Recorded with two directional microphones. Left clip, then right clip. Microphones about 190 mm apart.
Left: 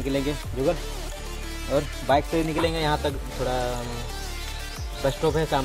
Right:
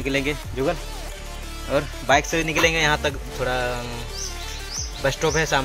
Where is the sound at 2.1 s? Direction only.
Centre (ahead or behind).